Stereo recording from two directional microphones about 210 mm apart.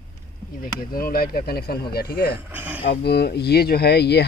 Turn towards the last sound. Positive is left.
turn(degrees=50)  # may be behind; listen again after turning